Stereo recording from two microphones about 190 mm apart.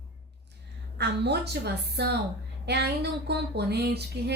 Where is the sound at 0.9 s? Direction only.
60° right (ahead or behind).